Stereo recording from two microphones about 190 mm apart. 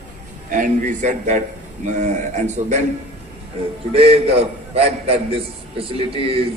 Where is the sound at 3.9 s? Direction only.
30° right (ahead or behind).